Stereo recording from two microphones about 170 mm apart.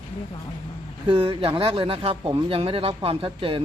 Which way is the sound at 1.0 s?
30° right (ahead or behind).